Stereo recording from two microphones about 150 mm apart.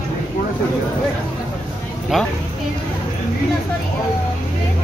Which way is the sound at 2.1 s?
Centre (ahead or behind).